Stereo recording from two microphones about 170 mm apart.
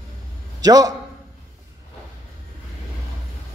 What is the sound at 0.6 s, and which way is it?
Speech, 20° right (ahead or behind).